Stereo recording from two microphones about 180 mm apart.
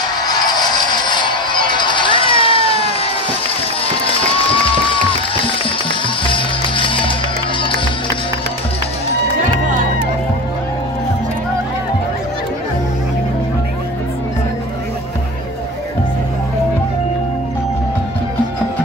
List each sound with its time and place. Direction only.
0.3 s music: 20° left (ahead or behind)
4.3 s music: 30° left (ahead or behind)